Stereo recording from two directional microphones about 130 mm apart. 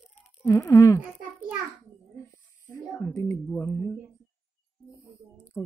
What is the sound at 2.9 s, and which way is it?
Speech, 20° left (ahead or behind).